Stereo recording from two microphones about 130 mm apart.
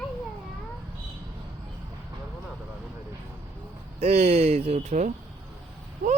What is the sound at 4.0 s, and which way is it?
Speech, 55° right (ahead or behind).